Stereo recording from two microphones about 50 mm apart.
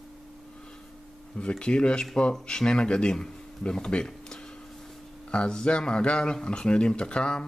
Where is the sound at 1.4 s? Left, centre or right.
Left.